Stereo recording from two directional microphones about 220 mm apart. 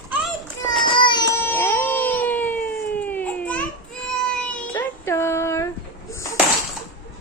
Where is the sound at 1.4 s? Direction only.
10° left (ahead or behind).